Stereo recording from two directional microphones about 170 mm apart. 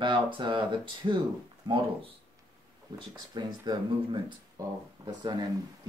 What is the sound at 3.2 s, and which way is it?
Speech, 25° right (ahead or behind).